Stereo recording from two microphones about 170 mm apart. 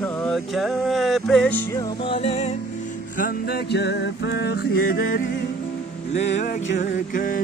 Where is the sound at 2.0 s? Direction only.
35° left (ahead or behind).